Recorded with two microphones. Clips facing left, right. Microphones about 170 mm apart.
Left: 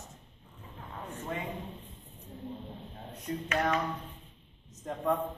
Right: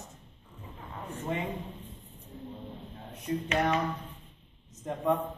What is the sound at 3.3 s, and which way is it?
Speech, 5° right (ahead or behind).